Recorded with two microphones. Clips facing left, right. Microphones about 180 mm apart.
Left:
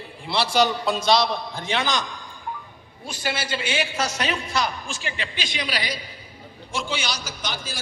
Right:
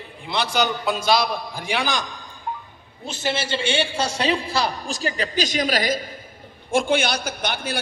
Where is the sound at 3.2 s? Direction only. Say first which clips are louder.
Right 4 dB; 25° right (ahead or behind).